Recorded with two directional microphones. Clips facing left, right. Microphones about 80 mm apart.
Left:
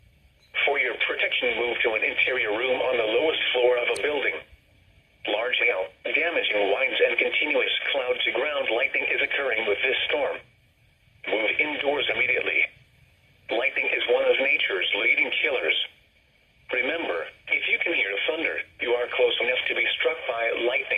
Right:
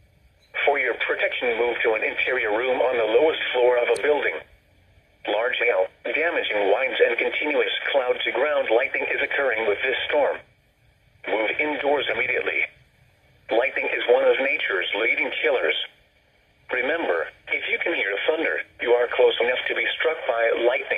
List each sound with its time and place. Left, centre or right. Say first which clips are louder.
0.5 s speech: right 4 dB; right